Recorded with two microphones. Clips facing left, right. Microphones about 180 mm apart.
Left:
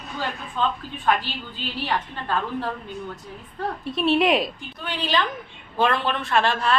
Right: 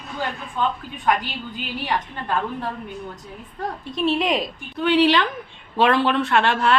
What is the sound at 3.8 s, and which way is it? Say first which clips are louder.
Speech: left 2 dB; centre (ahead or behind).